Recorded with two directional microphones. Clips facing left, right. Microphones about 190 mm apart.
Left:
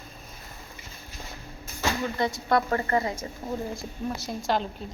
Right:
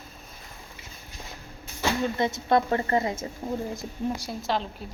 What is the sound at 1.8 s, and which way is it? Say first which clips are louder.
A woman's voice: right 2 dB; 20° right (ahead or behind).